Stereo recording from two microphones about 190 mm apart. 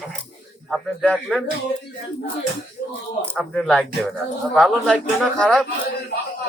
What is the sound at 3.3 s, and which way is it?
A man's voice, 5° left (ahead or behind).